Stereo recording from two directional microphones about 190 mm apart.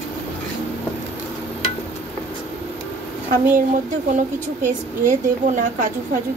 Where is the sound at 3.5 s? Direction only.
40° right (ahead or behind).